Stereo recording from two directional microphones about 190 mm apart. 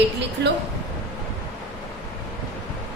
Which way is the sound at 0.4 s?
65° right (ahead or behind).